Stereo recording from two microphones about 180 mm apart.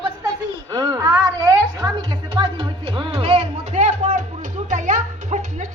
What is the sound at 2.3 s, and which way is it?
Music, 30° right (ahead or behind).